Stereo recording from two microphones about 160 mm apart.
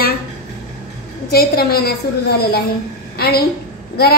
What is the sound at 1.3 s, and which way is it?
A woman's voice, 75° left (ahead or behind).